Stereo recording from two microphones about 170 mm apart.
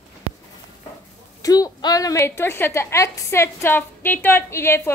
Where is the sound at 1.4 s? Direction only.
20° left (ahead or behind).